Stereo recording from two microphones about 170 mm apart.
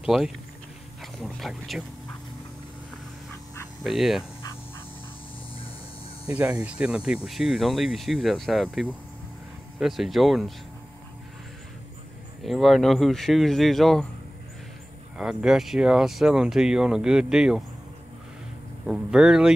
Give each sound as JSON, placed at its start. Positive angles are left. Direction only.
{"t": 0.0, "sound": "speech", "side_deg": 0}
{"t": 3.8, "sound": "speech", "side_deg": 0}
{"t": 6.3, "sound": "speech", "side_deg": -10}
{"t": 12.4, "sound": "speech", "side_deg": 0}
{"t": 15.1, "sound": "speech", "side_deg": -5}
{"t": 18.9, "sound": "speech", "side_deg": -5}